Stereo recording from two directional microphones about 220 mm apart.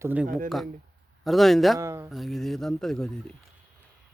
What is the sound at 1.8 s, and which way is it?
Speech, 15° right (ahead or behind).